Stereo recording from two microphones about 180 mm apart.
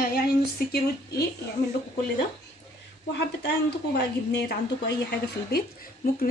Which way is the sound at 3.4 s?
70° left (ahead or behind).